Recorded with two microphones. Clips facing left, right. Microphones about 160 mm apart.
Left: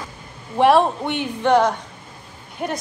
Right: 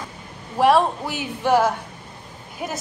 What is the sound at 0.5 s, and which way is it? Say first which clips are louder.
Speech: left 2 dB; centre (ahead or behind).